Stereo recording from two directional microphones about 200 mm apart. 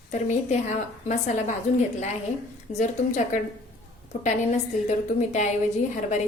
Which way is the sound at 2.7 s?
35° left (ahead or behind).